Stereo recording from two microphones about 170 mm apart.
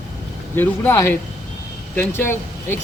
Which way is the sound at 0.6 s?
15° left (ahead or behind).